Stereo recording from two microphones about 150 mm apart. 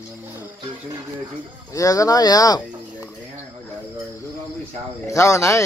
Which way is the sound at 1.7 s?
25° left (ahead or behind).